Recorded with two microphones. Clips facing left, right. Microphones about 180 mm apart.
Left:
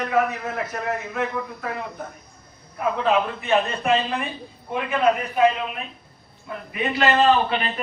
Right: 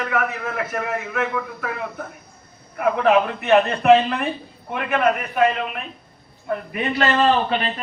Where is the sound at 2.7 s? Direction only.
65° right (ahead or behind).